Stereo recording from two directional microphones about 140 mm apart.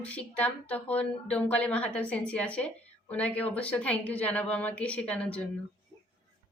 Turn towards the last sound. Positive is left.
turn(degrees=10)  # may be behind; listen again after turning